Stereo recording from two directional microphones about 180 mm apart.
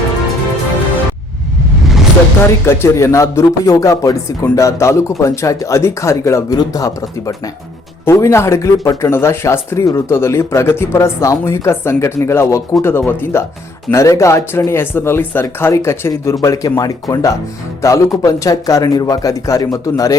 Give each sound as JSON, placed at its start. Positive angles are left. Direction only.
{"t": 2.6, "sound": "speech", "side_deg": 15}